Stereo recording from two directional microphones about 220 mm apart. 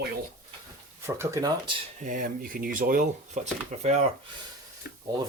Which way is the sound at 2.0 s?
35° right (ahead or behind).